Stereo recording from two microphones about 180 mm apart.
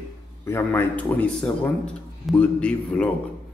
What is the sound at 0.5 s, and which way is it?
Speech, 15° left (ahead or behind).